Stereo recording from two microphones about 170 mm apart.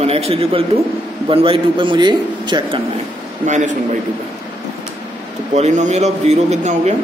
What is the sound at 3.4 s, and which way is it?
Speech, 45° right (ahead or behind).